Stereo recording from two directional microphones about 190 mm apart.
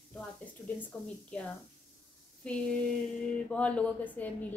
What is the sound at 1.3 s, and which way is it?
A woman's voice, 5° left (ahead or behind).